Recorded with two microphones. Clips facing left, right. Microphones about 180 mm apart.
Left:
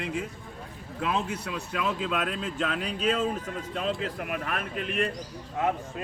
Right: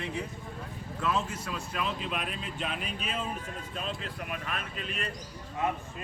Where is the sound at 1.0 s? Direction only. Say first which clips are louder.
Left 2 dB; 60° left (ahead or behind).